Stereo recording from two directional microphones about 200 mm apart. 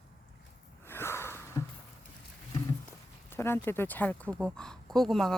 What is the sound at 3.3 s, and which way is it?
Speech, 10° left (ahead or behind).